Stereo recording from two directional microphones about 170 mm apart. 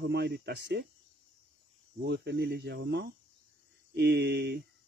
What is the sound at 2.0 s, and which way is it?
Speech, 80° right.